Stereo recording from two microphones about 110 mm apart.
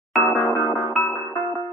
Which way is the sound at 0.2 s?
20° left (ahead or behind).